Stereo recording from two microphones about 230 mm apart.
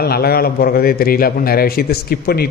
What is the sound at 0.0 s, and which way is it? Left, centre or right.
A man's voice, left.